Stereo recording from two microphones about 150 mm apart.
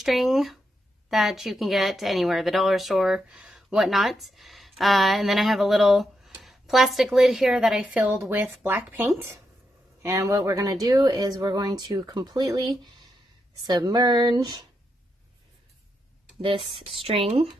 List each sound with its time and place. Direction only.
0.0 s speech: centre (ahead or behind); by 14.7 s 25° right (ahead or behind)
16.3 s speech: 35° right (ahead or behind)